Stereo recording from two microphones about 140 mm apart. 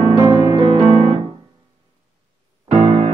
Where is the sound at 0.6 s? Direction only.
45° right (ahead or behind).